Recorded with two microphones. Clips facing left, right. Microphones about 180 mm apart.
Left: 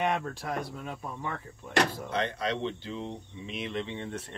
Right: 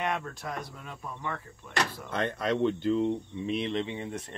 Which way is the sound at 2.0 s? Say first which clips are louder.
Right 1 dB; 50° right (ahead or behind).